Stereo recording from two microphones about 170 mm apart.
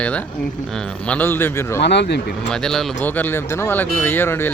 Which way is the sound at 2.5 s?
5° left (ahead or behind).